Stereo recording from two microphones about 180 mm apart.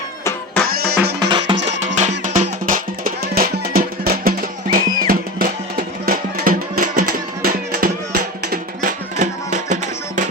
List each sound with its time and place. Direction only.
0.7 s music: 60° right (ahead or behind)
1.2 s music: 25° right (ahead or behind)
1.5 s music: 80° right
2.0 s music: 40° right (ahead or behind)